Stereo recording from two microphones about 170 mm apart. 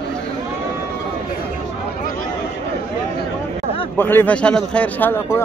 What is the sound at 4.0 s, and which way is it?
A man's voice, 10° left (ahead or behind).